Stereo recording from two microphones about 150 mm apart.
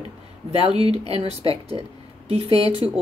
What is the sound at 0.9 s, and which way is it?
A woman's voice, 45° right (ahead or behind).